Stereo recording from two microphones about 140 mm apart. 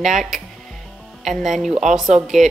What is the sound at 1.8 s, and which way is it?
Speech, 65° right (ahead or behind).